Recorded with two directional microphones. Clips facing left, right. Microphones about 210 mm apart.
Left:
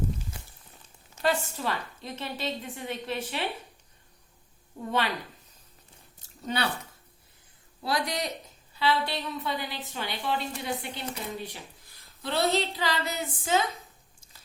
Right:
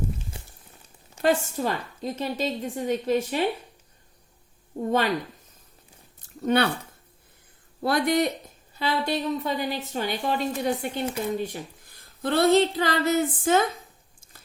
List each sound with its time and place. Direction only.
1.2 s a woman's voice: 45° right (ahead or behind)
4.9 s a woman's voice: 45° right (ahead or behind)
6.4 s speech: 55° right (ahead or behind)
7.8 s a woman's voice: 55° right (ahead or behind)